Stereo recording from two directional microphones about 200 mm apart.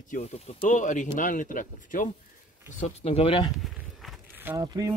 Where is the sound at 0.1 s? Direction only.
30° left (ahead or behind).